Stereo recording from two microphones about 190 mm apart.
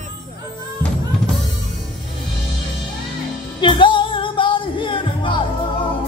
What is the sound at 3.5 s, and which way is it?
Music, 25° left (ahead or behind).